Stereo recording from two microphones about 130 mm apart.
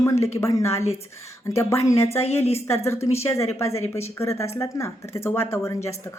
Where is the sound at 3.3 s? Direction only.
20° left (ahead or behind).